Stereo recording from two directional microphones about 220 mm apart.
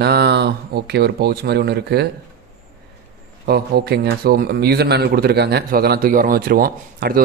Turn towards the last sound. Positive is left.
turn(degrees=-40)  # may be behind; listen again after turning